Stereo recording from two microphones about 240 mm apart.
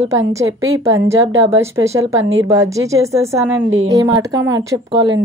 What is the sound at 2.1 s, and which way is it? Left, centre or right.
Speech, right.